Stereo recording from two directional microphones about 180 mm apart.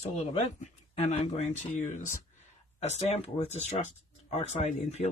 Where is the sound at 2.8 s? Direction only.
40° left (ahead or behind).